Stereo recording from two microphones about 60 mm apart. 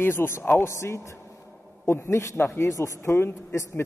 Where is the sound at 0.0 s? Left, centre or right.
Left.